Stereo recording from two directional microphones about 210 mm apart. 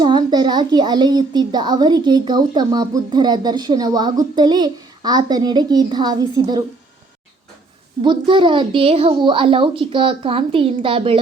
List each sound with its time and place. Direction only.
0.0 s a child's voice: 20° right (ahead or behind)
8.0 s a child's voice: 25° right (ahead or behind)